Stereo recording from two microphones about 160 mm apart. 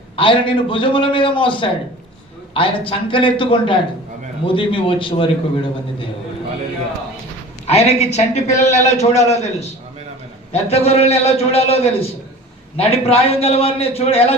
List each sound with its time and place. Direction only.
0.2 s a man's voice: 30° left (ahead or behind)
7.7 s a man's voice: 40° left (ahead or behind)